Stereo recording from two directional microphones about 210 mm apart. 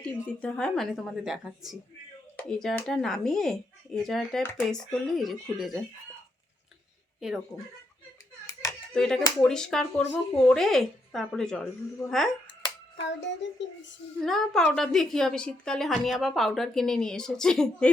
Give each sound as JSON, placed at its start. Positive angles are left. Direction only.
{"t": 0.0, "sound": "speech", "side_deg": 5}
{"t": 7.2, "sound": "speech", "side_deg": 0}
{"t": 8.9, "sound": "speech", "side_deg": 0}
{"t": 13.0, "sound": "child singing", "side_deg": 60}
{"t": 14.2, "sound": "speech", "side_deg": 0}